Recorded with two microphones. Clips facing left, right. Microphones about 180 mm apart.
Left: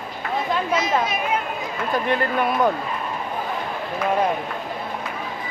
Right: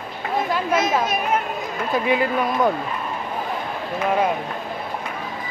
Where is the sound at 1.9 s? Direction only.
5° right (ahead or behind).